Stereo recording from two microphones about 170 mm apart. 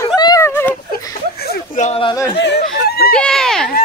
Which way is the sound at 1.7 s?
45° left (ahead or behind).